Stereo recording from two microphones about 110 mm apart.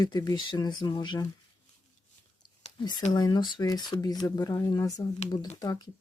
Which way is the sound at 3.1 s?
40° left (ahead or behind).